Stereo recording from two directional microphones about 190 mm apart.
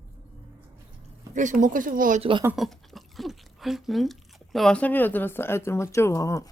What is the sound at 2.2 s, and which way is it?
Speech, 25° right (ahead or behind).